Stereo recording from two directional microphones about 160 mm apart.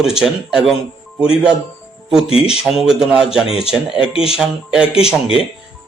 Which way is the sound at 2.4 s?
5° right (ahead or behind).